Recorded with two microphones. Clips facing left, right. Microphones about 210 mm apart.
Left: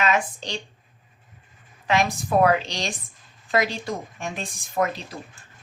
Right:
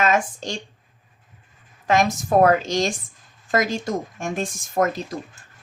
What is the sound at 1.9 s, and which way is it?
Speech, 45° right (ahead or behind).